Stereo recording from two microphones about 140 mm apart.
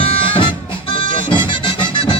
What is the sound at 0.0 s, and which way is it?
Music, 45° left (ahead or behind).